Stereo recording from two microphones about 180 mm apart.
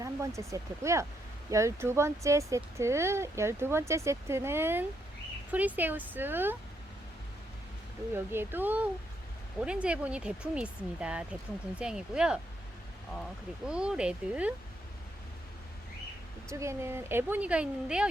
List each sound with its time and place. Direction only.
0.0 s speech: 15° right (ahead or behind)
8.1 s speech: 10° right (ahead or behind)
13.7 s speech: 5° right (ahead or behind)
16.5 s speech: 15° right (ahead or behind)